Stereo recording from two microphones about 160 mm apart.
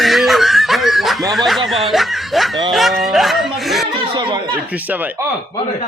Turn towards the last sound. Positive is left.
turn(degrees=-30)  # may be behind; listen again after turning